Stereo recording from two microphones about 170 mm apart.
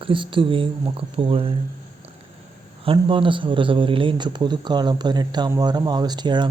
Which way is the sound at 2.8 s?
30° right (ahead or behind).